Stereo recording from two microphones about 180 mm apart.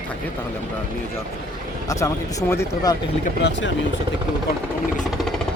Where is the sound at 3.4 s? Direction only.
80° left.